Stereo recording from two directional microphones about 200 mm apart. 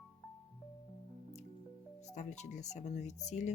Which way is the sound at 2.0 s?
35° left (ahead or behind).